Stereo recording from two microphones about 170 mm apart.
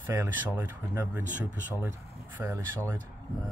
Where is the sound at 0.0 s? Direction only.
15° right (ahead or behind).